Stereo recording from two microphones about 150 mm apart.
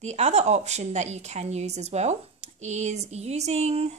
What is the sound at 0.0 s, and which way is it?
A woman's voice, 50° right (ahead or behind).